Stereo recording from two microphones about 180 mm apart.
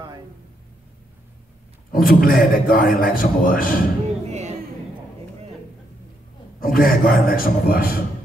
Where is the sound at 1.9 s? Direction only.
55° left (ahead or behind).